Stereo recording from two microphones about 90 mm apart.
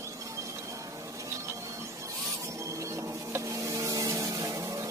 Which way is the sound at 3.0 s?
30° right (ahead or behind).